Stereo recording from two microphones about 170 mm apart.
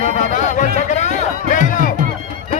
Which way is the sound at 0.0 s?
50° left (ahead or behind).